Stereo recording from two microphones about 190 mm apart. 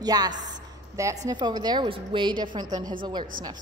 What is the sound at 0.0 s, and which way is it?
A woman's voice, 20° right (ahead or behind).